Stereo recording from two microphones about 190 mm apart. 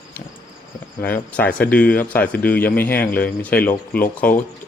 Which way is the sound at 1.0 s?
10° left (ahead or behind).